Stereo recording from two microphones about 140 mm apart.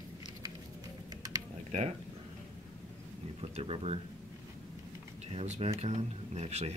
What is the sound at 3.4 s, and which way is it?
Speech, 45° right (ahead or behind).